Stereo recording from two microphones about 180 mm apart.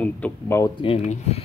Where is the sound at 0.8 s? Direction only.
35° left (ahead or behind).